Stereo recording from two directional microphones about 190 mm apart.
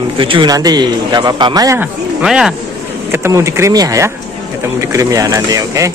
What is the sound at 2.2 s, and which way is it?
Speech, 5° right (ahead or behind).